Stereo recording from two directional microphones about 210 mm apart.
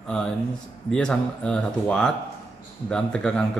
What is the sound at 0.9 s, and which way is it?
Speech, 5° left (ahead or behind).